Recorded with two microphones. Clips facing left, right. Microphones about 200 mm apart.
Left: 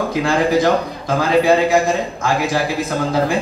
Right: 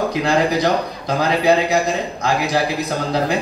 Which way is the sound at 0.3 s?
50° left (ahead or behind).